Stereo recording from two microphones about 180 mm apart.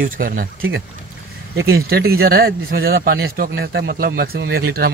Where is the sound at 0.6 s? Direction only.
90° right.